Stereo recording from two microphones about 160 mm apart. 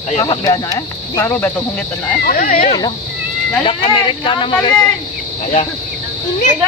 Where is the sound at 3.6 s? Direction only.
30° left (ahead or behind).